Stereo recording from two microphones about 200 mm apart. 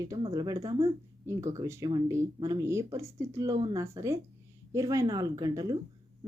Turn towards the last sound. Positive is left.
turn(degrees=-20)  # may be behind; listen again after turning